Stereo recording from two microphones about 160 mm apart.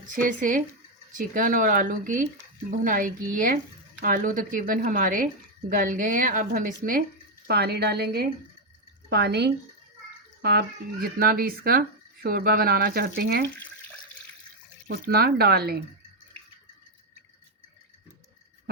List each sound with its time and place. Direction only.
0.1 s speech: 55° right (ahead or behind)
7.4 s a woman's voice: 80° right
14.8 s speech: 70° right (ahead or behind)